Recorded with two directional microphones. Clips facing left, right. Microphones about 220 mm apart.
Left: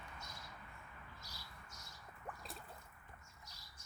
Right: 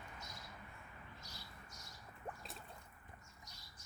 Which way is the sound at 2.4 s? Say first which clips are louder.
Left 1 dB; centre (ahead or behind).